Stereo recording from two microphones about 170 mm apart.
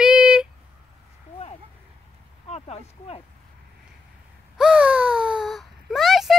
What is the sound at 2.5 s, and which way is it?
Speech, 40° left (ahead or behind).